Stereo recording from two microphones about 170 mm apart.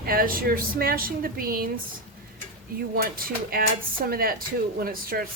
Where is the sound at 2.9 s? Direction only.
60° right (ahead or behind).